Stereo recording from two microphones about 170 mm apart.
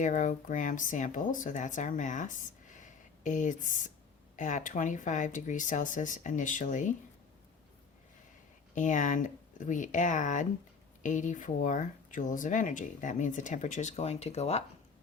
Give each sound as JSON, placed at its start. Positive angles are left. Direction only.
{"t": 0.0, "sound": "speech", "side_deg": 45}
{"t": 8.7, "sound": "speech", "side_deg": 45}